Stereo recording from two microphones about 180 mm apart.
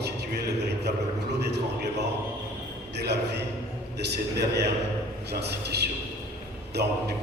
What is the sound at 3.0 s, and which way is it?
A man's voice, 70° right (ahead or behind).